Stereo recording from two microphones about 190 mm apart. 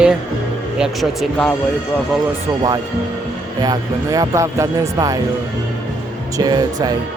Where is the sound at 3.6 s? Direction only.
20° right (ahead or behind).